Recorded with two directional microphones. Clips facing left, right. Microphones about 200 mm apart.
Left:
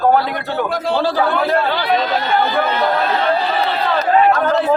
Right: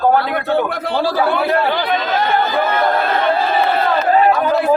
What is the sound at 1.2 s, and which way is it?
Speech, 10° right (ahead or behind).